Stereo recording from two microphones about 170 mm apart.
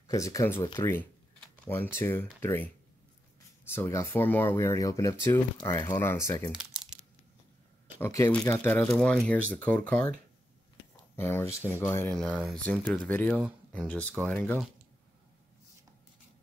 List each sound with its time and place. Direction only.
0.1 s speech: 20° left (ahead or behind)
8.0 s speech: 15° left (ahead or behind)
11.1 s speech: 10° left (ahead or behind)
12.1 s speech: centre (ahead or behind)